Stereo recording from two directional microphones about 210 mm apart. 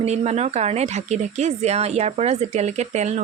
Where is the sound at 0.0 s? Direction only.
30° right (ahead or behind).